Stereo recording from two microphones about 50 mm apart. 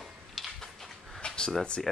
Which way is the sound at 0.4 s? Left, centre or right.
Centre.